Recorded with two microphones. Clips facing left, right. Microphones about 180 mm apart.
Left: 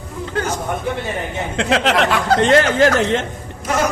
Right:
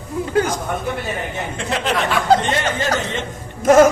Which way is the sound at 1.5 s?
90° left.